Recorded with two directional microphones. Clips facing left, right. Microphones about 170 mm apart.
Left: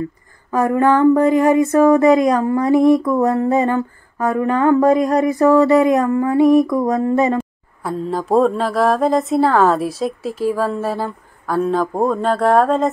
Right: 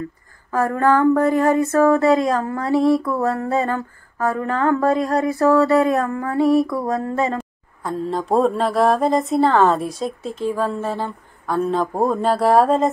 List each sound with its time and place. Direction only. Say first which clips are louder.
0.5 s speech: left 3 dB; 15° left (ahead or behind)
7.3 s mantra: left 6 dB; 5° left (ahead or behind)